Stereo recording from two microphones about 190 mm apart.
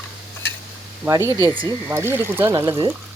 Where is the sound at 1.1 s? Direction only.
15° right (ahead or behind).